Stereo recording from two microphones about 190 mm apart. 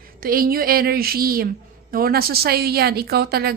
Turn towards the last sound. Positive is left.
turn(degrees=-55)  # may be behind; listen again after turning